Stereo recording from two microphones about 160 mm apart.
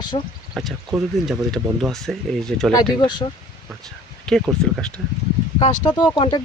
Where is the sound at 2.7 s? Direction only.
30° left (ahead or behind).